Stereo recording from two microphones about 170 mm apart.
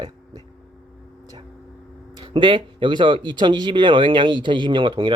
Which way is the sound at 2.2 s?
30° right (ahead or behind).